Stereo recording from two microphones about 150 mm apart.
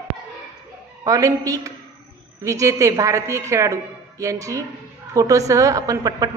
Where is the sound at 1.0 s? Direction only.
20° right (ahead or behind).